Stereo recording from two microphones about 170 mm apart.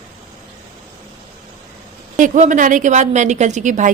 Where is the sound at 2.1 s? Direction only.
50° right (ahead or behind).